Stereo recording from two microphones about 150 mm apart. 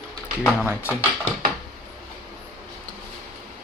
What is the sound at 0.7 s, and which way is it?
Speech, 15° left (ahead or behind).